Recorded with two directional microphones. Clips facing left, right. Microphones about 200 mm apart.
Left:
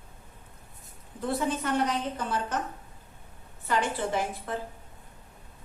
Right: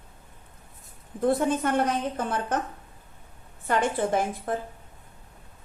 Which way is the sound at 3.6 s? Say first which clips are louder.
Right 4 dB; 50° right (ahead or behind).